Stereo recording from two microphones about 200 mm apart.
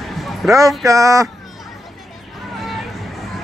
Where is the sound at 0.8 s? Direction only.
15° right (ahead or behind).